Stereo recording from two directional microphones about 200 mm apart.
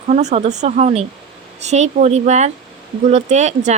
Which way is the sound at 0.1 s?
35° right (ahead or behind).